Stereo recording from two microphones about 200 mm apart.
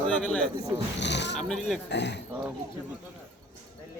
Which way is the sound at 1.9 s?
60° left (ahead or behind).